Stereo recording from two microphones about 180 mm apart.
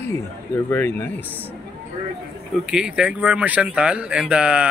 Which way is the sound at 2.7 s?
5° right (ahead or behind).